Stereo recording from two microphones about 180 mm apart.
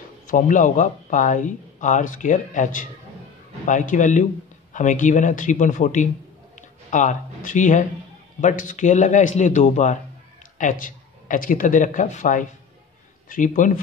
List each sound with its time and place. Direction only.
0.3 s speech: 45° left (ahead or behind)